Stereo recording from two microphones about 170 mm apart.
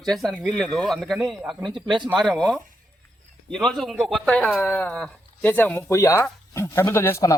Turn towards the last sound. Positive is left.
turn(degrees=15)  # may be behind; listen again after turning